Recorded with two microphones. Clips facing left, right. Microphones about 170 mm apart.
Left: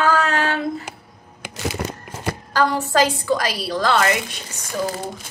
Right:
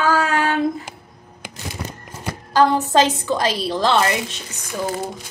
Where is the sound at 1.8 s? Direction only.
65° left (ahead or behind).